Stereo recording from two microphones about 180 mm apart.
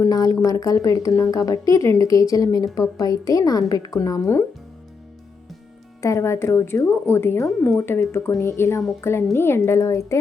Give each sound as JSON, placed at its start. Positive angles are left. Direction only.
{"t": 0.0, "sound": "a sound", "side_deg": 20}
{"t": 0.4, "sound": "a woman's voice", "side_deg": 20}
{"t": 6.0, "sound": "a woman's voice", "side_deg": 15}
{"t": 7.4, "sound": "a woman's voice", "side_deg": 0}
{"t": 7.8, "sound": "a woman's voice", "side_deg": 15}